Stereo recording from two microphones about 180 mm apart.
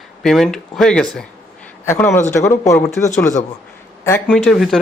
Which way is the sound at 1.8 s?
15° left (ahead or behind).